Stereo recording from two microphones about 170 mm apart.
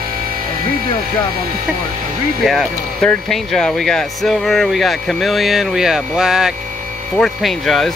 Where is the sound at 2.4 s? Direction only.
5° left (ahead or behind).